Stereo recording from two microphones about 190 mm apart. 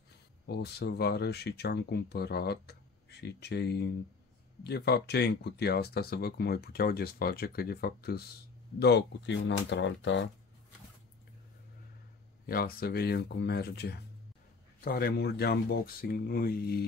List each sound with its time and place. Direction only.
0.5 s speech: 60° left (ahead or behind); by 10.3 s 75° left (ahead or behind)
12.4 s speech: 50° left (ahead or behind)